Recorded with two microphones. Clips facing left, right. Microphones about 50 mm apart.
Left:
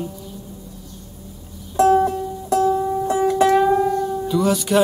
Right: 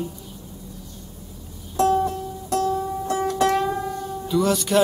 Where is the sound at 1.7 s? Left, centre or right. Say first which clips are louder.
Left 5 dB; left.